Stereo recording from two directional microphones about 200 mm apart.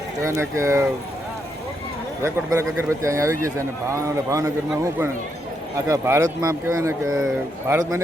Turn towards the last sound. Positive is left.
turn(degrees=-15)  # may be behind; listen again after turning